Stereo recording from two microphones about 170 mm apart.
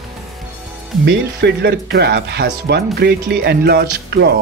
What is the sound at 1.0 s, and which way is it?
Speech, 75° right (ahead or behind).